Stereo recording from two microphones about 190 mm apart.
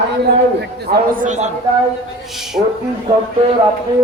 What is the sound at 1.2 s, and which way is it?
Speech, 40° right (ahead or behind).